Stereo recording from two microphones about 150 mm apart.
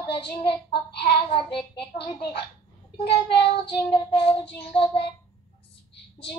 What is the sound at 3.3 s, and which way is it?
Child singing, 35° left (ahead or behind).